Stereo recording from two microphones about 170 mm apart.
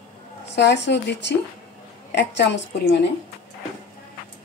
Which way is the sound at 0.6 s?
80° left.